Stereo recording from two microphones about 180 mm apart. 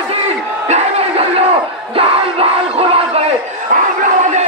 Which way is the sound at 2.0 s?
30° right (ahead or behind).